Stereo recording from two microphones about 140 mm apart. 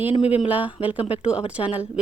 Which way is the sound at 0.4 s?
10° right (ahead or behind).